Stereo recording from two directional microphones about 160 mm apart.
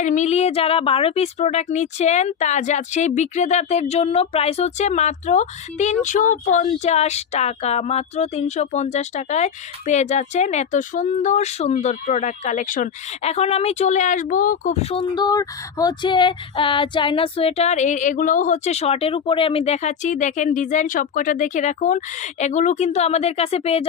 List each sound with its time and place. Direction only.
0.0 s speech: 50° left (ahead or behind)
15.1 s speech: 25° left (ahead or behind)